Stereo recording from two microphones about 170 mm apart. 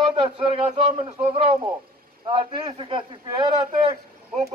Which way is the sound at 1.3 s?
35° right (ahead or behind).